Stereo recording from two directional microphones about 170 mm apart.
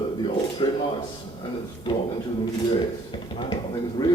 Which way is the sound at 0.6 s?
30° left (ahead or behind).